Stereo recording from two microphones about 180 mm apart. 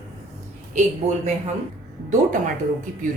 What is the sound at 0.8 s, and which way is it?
Speech, 40° right (ahead or behind).